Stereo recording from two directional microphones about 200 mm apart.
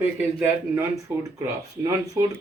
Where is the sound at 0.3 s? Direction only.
10° right (ahead or behind).